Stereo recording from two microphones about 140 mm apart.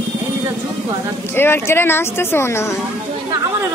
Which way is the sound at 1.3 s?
15° left (ahead or behind).